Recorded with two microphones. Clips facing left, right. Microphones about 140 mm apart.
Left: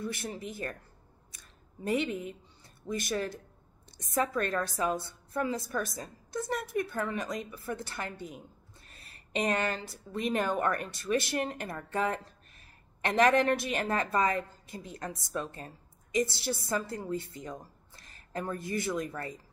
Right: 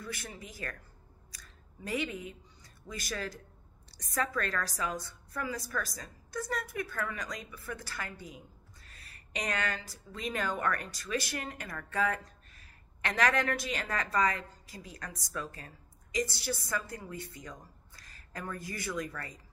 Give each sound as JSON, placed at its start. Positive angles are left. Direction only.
{"t": 0.0, "sound": "a woman's voice", "side_deg": 25}
{"t": 1.9, "sound": "a woman's voice", "side_deg": 25}